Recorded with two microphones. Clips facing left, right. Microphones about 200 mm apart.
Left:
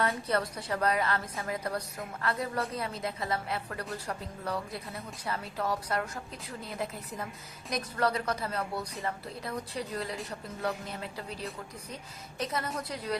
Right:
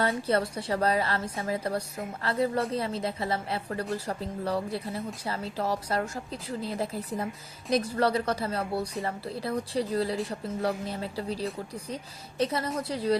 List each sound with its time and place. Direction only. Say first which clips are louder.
0.3 s a woman's voice: right 4 dB; 30° right (ahead or behind)